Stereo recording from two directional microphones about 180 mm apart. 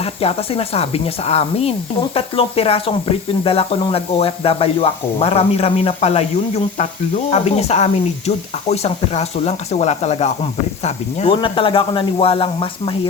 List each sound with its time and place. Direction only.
0.0 s speech: 35° left (ahead or behind)
7.3 s speech: 35° left (ahead or behind)